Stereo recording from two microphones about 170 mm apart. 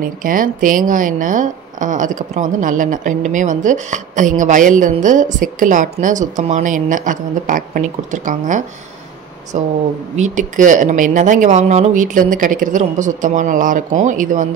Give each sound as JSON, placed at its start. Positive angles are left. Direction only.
{"t": 0.0, "sound": "a woman's voice", "side_deg": -55}